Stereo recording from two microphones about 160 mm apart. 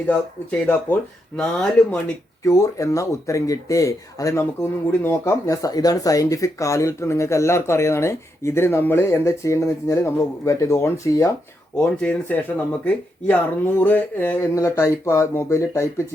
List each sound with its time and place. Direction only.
0.6 s speech: 10° left (ahead or behind)
2.4 s speech: 20° left (ahead or behind)
11.8 s speech: 5° left (ahead or behind)